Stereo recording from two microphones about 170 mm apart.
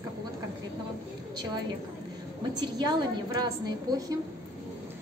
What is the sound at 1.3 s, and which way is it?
Speech, 25° right (ahead or behind).